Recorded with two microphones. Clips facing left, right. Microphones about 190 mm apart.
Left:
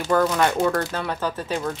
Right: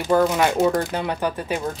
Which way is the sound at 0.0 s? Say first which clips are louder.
Right 2 dB; 15° right (ahead or behind).